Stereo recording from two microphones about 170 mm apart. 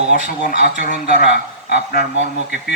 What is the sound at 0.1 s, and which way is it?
Speech, 55° left (ahead or behind).